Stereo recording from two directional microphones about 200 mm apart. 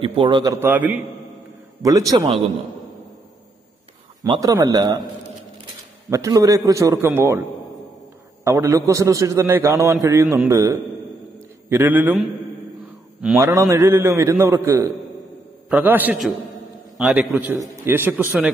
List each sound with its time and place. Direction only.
0.0 s a man's voice: 25° right (ahead or behind)
0.6 s a man's voice: 10° right (ahead or behind)
4.2 s a man's voice: 20° right (ahead or behind)
6.0 s a man's voice: 15° right (ahead or behind)
8.5 s a man's voice: 15° right (ahead or behind)
13.2 s a man's voice: 10° right (ahead or behind)